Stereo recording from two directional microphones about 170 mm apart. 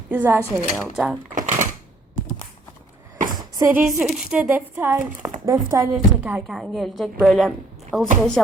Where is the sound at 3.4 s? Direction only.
20° right (ahead or behind).